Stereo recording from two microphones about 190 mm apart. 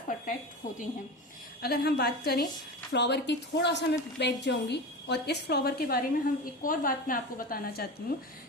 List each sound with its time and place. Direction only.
1.6 s a woman's voice: 55° left (ahead or behind)